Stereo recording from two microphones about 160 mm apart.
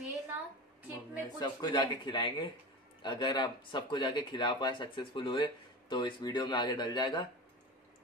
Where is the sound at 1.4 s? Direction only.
25° left (ahead or behind).